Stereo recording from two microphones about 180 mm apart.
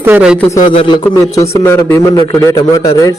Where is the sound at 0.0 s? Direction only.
10° right (ahead or behind).